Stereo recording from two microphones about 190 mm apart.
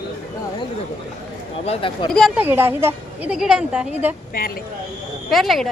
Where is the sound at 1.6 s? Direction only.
30° left (ahead or behind).